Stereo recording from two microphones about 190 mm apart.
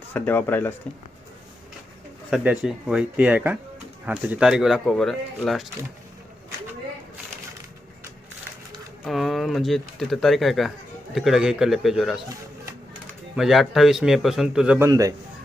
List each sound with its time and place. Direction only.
0.1 s speech: 10° left (ahead or behind)
2.3 s speech: 5° right (ahead or behind)
9.0 s speech: centre (ahead or behind)
13.3 s speech: centre (ahead or behind)
14.8 s speech: 15° right (ahead or behind)